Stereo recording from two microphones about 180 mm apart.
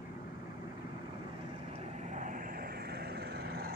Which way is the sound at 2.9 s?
65° right (ahead or behind).